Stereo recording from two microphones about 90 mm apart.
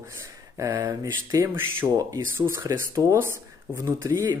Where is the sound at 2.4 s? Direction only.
30° right (ahead or behind).